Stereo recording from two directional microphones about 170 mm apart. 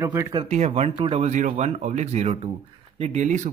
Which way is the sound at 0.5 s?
40° right (ahead or behind).